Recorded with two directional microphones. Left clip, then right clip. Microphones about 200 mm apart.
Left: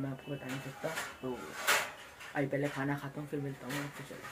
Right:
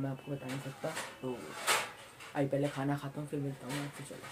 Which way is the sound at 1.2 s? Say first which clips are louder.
Left 1 dB; 20° right (ahead or behind).